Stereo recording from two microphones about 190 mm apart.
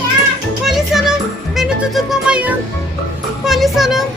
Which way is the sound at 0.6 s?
Centre (ahead or behind).